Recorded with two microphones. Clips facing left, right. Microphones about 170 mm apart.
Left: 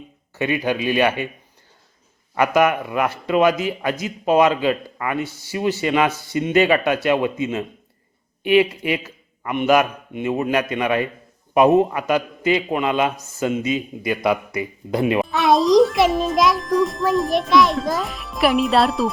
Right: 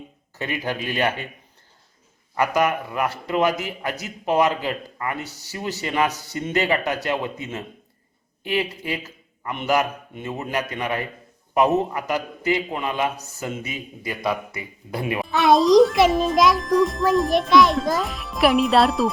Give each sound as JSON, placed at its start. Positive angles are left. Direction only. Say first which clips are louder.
{"t": 0.3, "sound": "speech", "louder": "left 6 dB", "side_deg": 20}
{"t": 2.4, "sound": "a man's voice", "louder": "left 4 dB", "side_deg": 20}
{"t": 6.1, "sound": "speech", "louder": "left 4 dB", "side_deg": -40}
{"t": 6.3, "sound": "a man's voice", "louder": "left 9 dB", "side_deg": 15}
{"t": 15.3, "sound": "a child's voice", "louder": "right 2 dB", "side_deg": 0}